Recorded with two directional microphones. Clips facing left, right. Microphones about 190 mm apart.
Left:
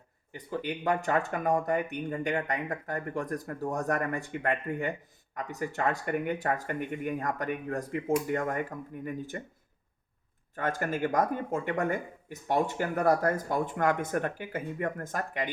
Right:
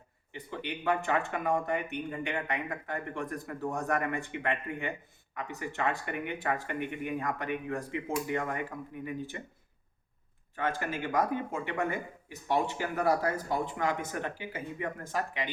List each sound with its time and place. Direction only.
0.3 s speech: 40° left (ahead or behind)
10.5 s speech: 45° left (ahead or behind)